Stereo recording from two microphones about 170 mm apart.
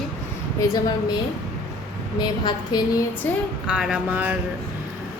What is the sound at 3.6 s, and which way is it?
Speech, 5° right (ahead or behind).